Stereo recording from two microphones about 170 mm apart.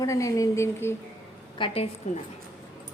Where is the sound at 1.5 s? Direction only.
30° left (ahead or behind).